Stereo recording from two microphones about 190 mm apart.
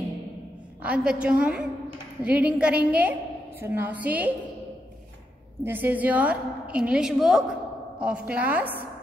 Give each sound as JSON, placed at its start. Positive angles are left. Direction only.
{"t": 0.8, "sound": "a woman's voice", "side_deg": -5}
{"t": 5.6, "sound": "a woman's voice", "side_deg": -10}